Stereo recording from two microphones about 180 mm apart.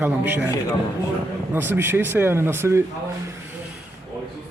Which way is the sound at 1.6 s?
10° right (ahead or behind).